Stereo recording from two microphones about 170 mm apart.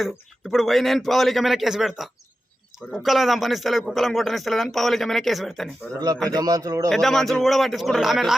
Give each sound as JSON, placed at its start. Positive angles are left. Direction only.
{"t": 0.5, "sound": "speech", "side_deg": 0}
{"t": 6.3, "sound": "a man's voice", "side_deg": -20}
{"t": 6.9, "sound": "speech", "side_deg": 0}